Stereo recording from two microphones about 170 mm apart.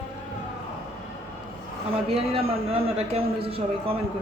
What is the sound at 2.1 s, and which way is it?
A man's voice, 35° right (ahead or behind).